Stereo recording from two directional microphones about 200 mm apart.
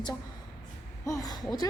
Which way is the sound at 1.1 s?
20° left (ahead or behind).